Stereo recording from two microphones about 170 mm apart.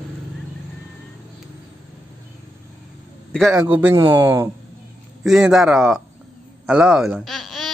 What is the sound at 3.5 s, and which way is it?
A man's voice, 15° right (ahead or behind).